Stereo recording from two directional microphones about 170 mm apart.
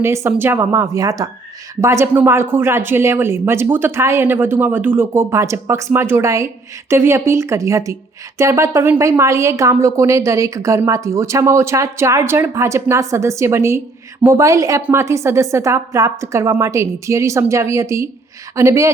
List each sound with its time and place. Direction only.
0.0 s a woman's voice: 15° right (ahead or behind)